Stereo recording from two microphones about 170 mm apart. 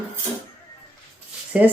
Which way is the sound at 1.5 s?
5° right (ahead or behind).